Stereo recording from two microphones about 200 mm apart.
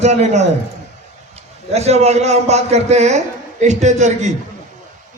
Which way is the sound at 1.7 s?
30° right (ahead or behind).